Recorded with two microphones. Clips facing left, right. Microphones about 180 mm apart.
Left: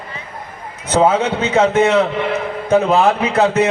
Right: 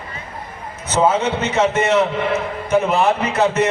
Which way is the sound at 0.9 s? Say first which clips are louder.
Left 3 dB; 60° left (ahead or behind).